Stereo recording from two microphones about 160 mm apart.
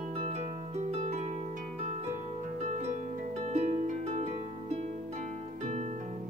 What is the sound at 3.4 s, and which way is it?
Harp, 45° right (ahead or behind).